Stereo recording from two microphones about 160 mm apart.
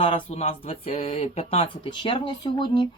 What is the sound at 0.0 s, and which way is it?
Speech, 35° left (ahead or behind).